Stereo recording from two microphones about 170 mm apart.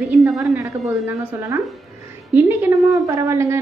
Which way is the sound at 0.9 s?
15° right (ahead or behind).